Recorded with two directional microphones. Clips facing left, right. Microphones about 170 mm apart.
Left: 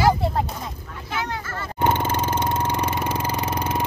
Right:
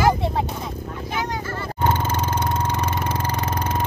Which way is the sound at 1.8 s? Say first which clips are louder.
Left 1 dB; 15° left (ahead or behind).